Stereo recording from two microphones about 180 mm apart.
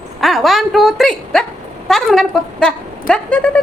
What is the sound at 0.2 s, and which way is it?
A woman's voice, centre (ahead or behind).